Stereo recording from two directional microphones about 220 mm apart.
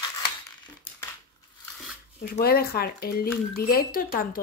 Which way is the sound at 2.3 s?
45° left (ahead or behind).